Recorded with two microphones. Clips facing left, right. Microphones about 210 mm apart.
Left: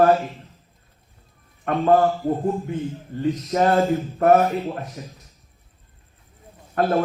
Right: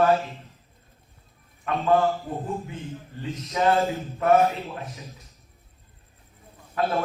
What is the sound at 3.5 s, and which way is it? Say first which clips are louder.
A man's voice: left 3 dB; 50° left (ahead or behind).